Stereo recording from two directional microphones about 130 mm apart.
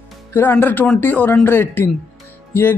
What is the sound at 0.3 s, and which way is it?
Speech, 15° left (ahead or behind).